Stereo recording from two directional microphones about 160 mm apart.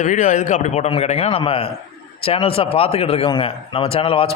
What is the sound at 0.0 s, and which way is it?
A man's voice, 50° left (ahead or behind).